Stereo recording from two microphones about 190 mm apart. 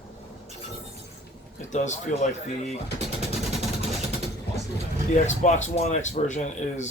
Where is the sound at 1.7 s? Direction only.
40° left (ahead or behind).